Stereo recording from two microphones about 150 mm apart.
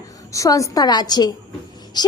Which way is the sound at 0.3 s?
20° left (ahead or behind).